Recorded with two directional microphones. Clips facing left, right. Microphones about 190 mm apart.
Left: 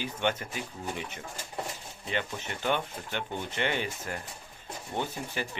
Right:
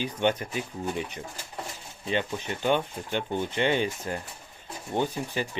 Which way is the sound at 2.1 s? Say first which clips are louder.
Right 5 dB; 20° right (ahead or behind).